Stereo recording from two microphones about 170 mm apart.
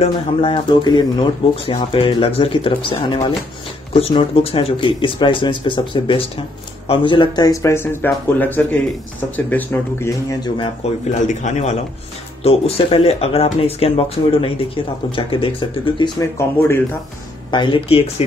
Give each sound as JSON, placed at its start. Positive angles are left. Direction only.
{"t": 0.0, "sound": "speech", "side_deg": 30}
{"t": 10.8, "sound": "speech", "side_deg": 45}
{"t": 16.2, "sound": "speech", "side_deg": 15}
{"t": 17.5, "sound": "speech", "side_deg": 30}